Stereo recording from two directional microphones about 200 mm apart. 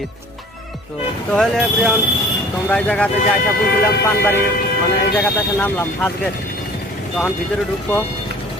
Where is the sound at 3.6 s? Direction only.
55° left (ahead or behind).